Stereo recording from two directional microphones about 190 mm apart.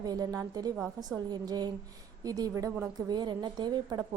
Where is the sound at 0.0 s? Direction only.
20° right (ahead or behind).